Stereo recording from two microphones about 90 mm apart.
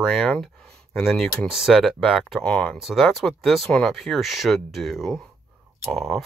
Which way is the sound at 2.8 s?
Centre (ahead or behind).